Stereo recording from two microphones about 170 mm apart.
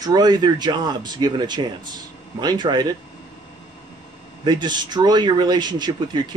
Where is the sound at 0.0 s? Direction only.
25° right (ahead or behind).